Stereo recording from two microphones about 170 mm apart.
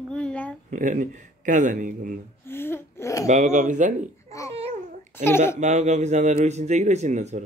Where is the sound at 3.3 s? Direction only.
45° right (ahead or behind).